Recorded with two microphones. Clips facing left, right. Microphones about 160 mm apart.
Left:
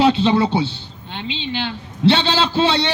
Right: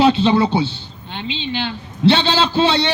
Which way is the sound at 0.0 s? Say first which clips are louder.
Right 1 dB; 30° right (ahead or behind).